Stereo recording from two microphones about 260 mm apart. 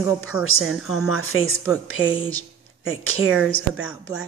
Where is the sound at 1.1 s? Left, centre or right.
Left.